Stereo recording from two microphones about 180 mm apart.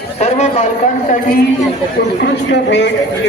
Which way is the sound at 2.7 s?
75° left (ahead or behind).